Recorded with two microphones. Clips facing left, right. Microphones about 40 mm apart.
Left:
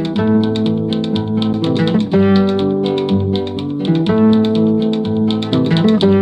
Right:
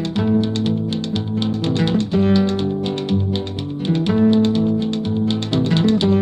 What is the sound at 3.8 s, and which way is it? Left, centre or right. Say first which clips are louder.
Music: left 4 dB; centre.